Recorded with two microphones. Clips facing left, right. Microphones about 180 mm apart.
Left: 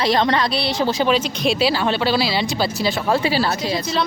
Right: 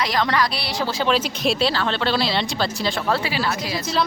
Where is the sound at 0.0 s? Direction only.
25° left (ahead or behind).